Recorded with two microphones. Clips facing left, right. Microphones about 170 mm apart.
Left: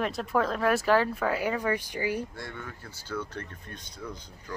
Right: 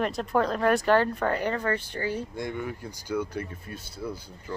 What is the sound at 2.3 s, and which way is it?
Speech, 15° right (ahead or behind).